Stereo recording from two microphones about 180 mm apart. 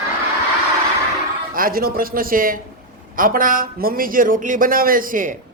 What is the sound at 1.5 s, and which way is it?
A man's voice, 50° right (ahead or behind).